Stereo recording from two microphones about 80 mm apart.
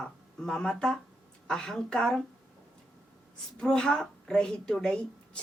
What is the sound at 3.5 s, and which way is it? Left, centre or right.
A woman's voice, centre.